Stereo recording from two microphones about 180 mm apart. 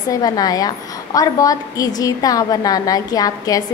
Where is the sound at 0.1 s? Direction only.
20° left (ahead or behind).